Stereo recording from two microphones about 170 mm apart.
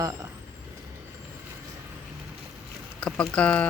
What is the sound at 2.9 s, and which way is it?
Speech, 5° left (ahead or behind).